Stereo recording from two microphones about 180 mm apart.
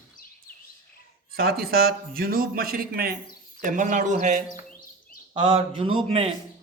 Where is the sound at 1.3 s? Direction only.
55° right (ahead or behind).